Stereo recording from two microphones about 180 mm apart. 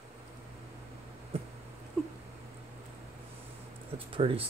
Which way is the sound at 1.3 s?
30° right (ahead or behind).